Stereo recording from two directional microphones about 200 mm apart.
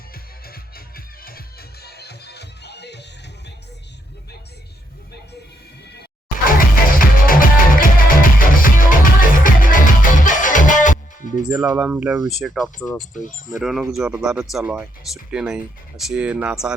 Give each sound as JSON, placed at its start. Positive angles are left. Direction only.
{"t": 0.1, "sound": "music", "side_deg": 50}
{"t": 5.9, "sound": "music", "side_deg": 50}
{"t": 11.5, "sound": "speech", "side_deg": -15}
{"t": 11.9, "sound": "speech", "side_deg": -5}
{"t": 13.0, "sound": "speech", "side_deg": 40}
{"t": 13.6, "sound": "speech", "side_deg": 0}